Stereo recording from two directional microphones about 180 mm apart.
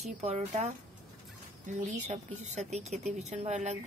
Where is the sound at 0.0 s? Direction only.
40° right (ahead or behind).